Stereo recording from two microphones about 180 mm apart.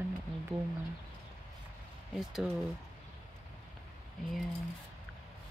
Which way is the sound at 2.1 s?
Centre (ahead or behind).